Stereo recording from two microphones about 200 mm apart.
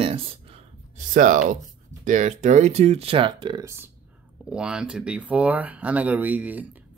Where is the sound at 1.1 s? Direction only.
40° right (ahead or behind); by 3.6 s 25° right (ahead or behind).